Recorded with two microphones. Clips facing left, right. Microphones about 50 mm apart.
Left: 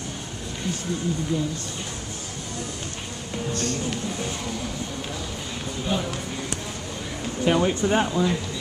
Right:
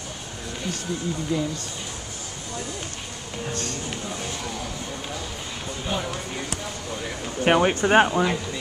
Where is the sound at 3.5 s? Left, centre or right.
Right.